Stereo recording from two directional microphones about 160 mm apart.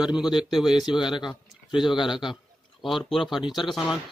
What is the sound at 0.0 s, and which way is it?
A man's voice, 5° right (ahead or behind).